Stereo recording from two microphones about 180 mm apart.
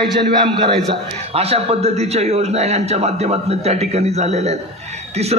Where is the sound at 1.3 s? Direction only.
35° right (ahead or behind).